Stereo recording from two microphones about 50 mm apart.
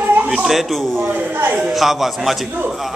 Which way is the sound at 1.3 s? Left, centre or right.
Right.